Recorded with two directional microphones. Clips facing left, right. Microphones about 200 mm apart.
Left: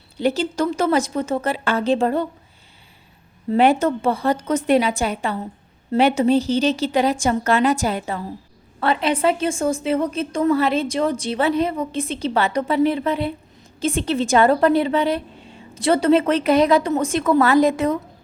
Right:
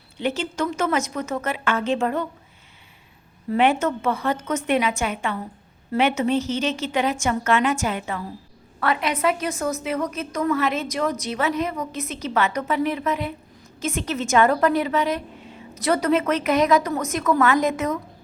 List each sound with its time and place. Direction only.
0.2 s a woman's voice: 35° left (ahead or behind)
3.5 s a woman's voice: 35° left (ahead or behind)